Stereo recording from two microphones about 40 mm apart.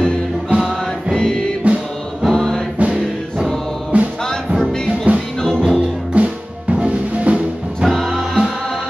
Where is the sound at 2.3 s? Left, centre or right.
Centre.